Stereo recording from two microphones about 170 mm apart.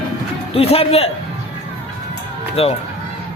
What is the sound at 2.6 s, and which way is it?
Speech, 35° left (ahead or behind).